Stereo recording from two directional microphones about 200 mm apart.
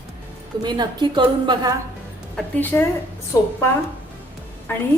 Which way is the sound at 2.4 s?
10° left (ahead or behind).